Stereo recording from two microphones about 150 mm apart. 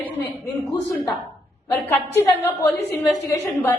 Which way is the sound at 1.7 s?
15° left (ahead or behind).